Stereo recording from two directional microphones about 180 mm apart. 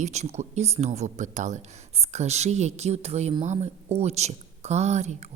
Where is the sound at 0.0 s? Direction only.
40° right (ahead or behind).